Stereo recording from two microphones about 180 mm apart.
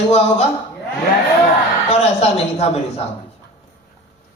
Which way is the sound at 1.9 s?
35° left (ahead or behind).